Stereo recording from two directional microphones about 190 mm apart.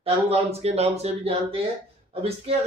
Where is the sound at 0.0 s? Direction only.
30° right (ahead or behind).